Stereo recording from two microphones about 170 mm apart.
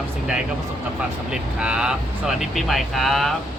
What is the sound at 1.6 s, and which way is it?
Speech, 5° right (ahead or behind).